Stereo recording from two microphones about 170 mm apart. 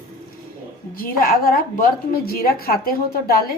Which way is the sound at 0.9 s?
60° left (ahead or behind).